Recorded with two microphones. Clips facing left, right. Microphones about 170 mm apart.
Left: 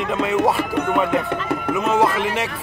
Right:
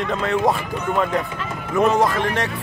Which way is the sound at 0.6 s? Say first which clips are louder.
Left 4 dB; 60° left (ahead or behind).